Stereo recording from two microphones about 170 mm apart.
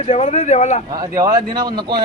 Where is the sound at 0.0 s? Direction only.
35° left (ahead or behind).